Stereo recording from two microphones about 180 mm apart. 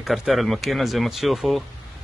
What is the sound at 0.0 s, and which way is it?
Speech, centre (ahead or behind).